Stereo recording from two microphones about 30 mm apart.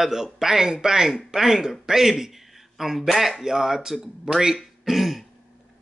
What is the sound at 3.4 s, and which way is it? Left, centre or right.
Speech, centre.